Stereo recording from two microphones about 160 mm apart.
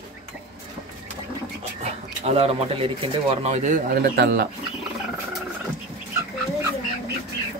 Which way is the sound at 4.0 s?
90° right.